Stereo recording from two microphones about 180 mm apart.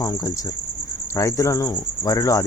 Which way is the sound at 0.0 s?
20° left (ahead or behind).